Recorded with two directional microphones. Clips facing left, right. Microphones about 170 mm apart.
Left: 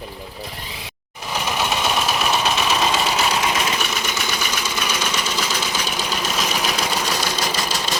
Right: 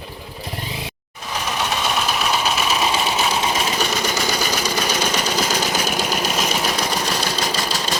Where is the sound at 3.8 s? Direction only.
40° right (ahead or behind).